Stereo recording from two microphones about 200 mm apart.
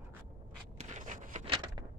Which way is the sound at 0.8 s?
40° right (ahead or behind).